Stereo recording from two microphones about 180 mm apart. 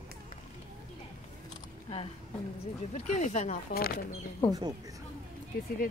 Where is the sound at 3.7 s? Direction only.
60° left (ahead or behind).